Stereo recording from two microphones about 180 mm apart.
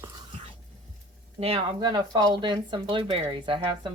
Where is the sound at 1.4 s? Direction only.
30° right (ahead or behind).